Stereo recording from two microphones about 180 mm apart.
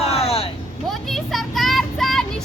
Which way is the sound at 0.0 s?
35° left (ahead or behind).